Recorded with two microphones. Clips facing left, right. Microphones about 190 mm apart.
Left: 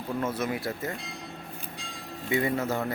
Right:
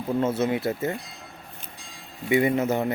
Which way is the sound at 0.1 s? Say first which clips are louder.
Right 6 dB; 25° right (ahead or behind).